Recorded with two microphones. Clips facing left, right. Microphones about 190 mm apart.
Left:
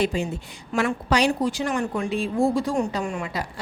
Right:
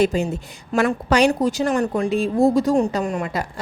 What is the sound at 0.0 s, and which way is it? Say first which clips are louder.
A woman's voice: right 5 dB; 45° right (ahead or behind).